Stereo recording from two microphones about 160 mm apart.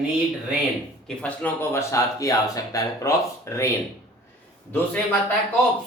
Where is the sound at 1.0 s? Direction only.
10° left (ahead or behind).